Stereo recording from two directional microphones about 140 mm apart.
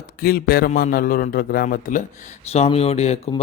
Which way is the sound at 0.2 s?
90° left.